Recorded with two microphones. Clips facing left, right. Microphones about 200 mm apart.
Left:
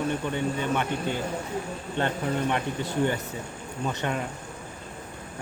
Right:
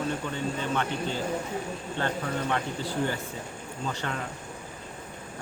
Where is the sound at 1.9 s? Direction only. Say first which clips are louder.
Left 4 dB; 20° left (ahead or behind).